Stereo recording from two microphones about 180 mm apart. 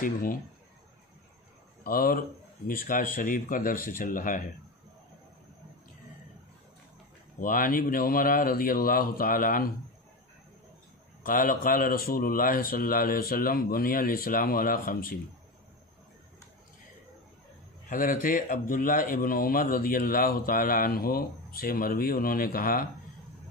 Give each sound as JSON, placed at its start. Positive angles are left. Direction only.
{"t": 0.0, "sound": "speech", "side_deg": 50}
{"t": 1.9, "sound": "speech", "side_deg": 55}
{"t": 7.3, "sound": "speech", "side_deg": 50}
{"t": 11.2, "sound": "speech", "side_deg": 50}
{"t": 17.8, "sound": "speech", "side_deg": 50}